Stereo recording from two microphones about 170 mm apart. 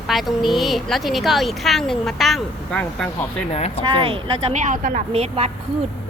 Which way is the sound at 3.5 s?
40° left (ahead or behind).